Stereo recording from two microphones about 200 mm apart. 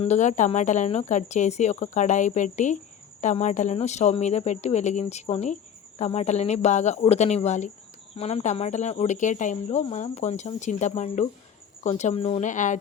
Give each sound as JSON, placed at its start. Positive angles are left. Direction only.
{"t": 0.0, "sound": "speech", "side_deg": 35}